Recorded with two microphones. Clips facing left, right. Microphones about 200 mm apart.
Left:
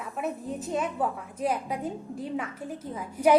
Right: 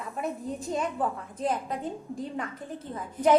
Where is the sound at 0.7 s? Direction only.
5° left (ahead or behind).